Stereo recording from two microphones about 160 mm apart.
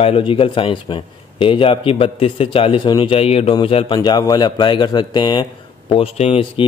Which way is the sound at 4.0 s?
25° left (ahead or behind).